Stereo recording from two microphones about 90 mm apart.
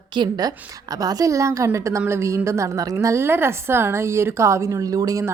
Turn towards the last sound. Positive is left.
turn(degrees=-40)  # may be behind; listen again after turning